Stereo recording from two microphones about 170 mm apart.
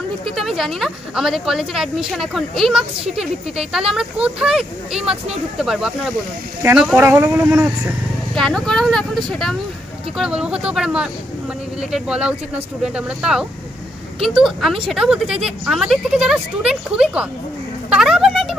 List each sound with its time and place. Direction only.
0.4 s speech: centre (ahead or behind)
8.4 s speech: 5° left (ahead or behind)
17.8 s a sound: 5° right (ahead or behind)